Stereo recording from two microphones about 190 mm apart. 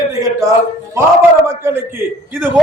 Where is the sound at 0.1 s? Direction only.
20° right (ahead or behind).